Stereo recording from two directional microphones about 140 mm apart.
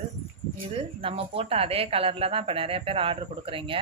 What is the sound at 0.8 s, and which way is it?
A woman's voice, 45° right (ahead or behind).